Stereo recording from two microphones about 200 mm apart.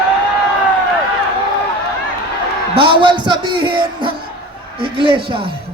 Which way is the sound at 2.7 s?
25° right (ahead or behind).